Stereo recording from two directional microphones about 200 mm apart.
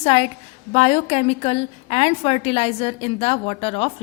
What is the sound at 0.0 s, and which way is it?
A woman's voice, 30° left (ahead or behind).